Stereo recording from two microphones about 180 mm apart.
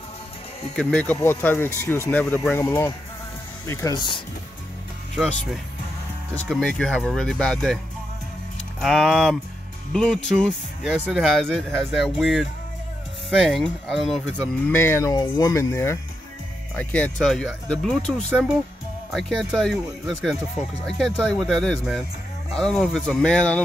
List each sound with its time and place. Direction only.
0.7 s speech: 5° left (ahead or behind); by 4.2 s 25° left (ahead or behind)
6.3 s speech: 5° left (ahead or behind)
8.8 s speech: centre (ahead or behind)
14.7 s speech: 15° left (ahead or behind)
15.1 s speech: 25° left (ahead or behind); by 23.6 s 5° left (ahead or behind)